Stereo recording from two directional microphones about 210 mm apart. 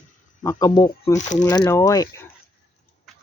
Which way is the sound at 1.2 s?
35° left (ahead or behind).